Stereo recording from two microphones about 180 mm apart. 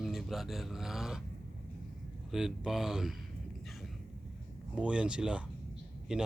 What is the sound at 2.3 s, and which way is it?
Speech, centre (ahead or behind).